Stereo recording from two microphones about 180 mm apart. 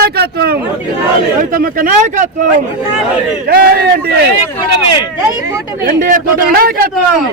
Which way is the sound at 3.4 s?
60° right (ahead or behind).